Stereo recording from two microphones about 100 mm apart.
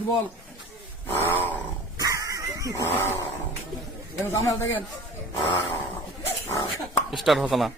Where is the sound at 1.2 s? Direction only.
20° left (ahead or behind).